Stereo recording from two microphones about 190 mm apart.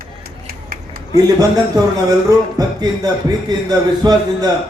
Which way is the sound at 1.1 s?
20° right (ahead or behind).